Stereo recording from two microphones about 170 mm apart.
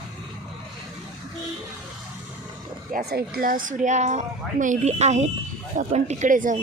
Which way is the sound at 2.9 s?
65° right (ahead or behind).